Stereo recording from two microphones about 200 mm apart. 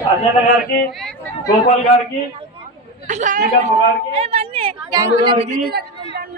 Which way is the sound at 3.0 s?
40° right (ahead or behind).